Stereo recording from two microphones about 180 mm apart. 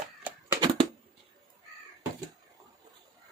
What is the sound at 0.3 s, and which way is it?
Cat, 10° right (ahead or behind).